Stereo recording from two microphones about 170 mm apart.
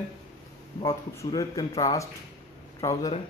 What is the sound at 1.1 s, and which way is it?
Speech, 20° left (ahead or behind).